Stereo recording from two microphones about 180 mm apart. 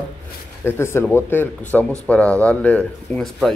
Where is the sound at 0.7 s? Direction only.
15° left (ahead or behind).